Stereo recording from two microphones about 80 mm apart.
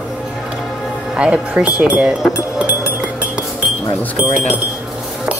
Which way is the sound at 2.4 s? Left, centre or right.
Centre.